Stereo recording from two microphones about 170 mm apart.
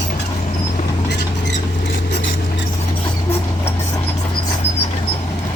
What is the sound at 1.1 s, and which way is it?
Rodents, 90° left.